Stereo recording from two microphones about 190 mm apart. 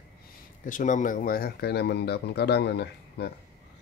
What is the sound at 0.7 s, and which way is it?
Speech, 40° left (ahead or behind).